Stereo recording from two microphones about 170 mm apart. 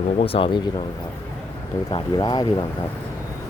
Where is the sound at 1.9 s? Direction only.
25° left (ahead or behind).